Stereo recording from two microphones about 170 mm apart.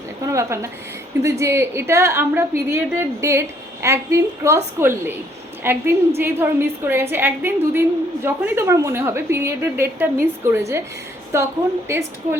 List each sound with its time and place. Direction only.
0.3 s a woman's voice: 15° right (ahead or behind)